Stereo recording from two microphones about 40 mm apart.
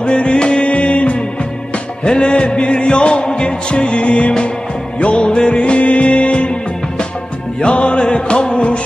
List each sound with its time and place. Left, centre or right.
0.0 s music: left
7.6 s music: left